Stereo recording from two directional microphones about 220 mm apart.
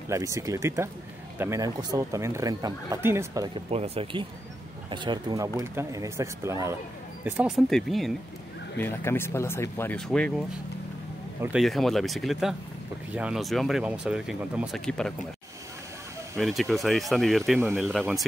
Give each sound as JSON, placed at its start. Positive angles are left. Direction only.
{"t": 0.1, "sound": "speech", "side_deg": -15}
{"t": 3.7, "sound": "speech", "side_deg": -25}
{"t": 11.4, "sound": "speech", "side_deg": 0}
{"t": 16.3, "sound": "speech", "side_deg": 0}